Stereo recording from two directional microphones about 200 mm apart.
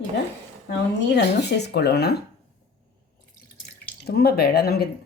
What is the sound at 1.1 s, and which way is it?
Speech, 55° left (ahead or behind).